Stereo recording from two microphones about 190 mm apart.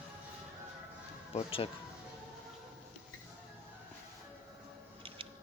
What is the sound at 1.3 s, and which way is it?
Speech, 30° left (ahead or behind).